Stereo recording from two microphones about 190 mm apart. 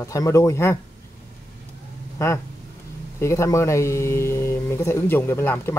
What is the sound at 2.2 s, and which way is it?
Speech, 15° left (ahead or behind).